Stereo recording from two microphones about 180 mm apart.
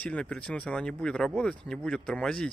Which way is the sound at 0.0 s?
5° left (ahead or behind).